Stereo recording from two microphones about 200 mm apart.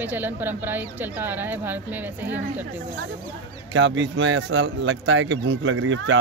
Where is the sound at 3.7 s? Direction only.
65° right (ahead or behind).